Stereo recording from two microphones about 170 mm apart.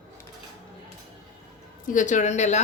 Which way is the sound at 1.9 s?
45° left (ahead or behind).